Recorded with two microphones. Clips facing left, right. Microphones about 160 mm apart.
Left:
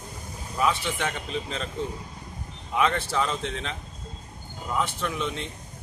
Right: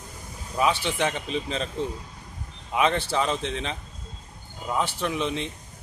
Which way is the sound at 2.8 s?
20° right (ahead or behind).